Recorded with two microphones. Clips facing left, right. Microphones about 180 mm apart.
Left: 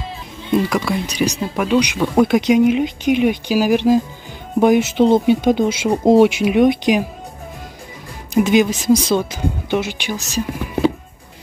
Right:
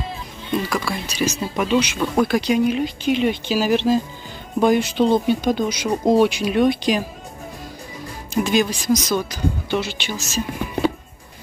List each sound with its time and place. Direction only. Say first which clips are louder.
0.7 s speech: left 5 dB; 20° left (ahead or behind)
8.4 s speech: left 5 dB; 20° left (ahead or behind)